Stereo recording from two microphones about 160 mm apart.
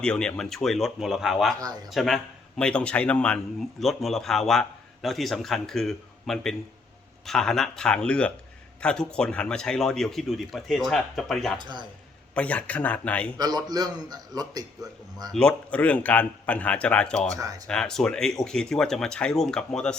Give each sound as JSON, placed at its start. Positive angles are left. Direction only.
{"t": 0.0, "sound": "a man's voice", "side_deg": 5}
{"t": 1.5, "sound": "speech", "side_deg": -25}
{"t": 1.9, "sound": "a man's voice", "side_deg": 0}
{"t": 11.5, "sound": "speech", "side_deg": -30}
{"t": 12.3, "sound": "speech", "side_deg": 10}
{"t": 13.4, "sound": "speech", "side_deg": -25}
{"t": 15.3, "sound": "speech", "side_deg": 5}
{"t": 17.3, "sound": "speech", "side_deg": -20}
{"t": 17.7, "sound": "a man's voice", "side_deg": 5}